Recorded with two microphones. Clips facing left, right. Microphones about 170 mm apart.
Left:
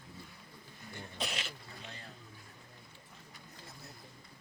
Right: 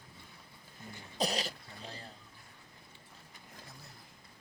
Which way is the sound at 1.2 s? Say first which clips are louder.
Right 8 dB; 35° right (ahead or behind).